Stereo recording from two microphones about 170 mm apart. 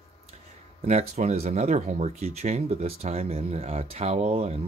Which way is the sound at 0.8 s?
40° right (ahead or behind).